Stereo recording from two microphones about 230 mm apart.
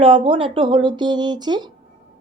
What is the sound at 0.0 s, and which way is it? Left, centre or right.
Speech, right.